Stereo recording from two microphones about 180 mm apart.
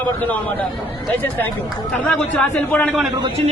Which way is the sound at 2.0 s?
5° left (ahead or behind).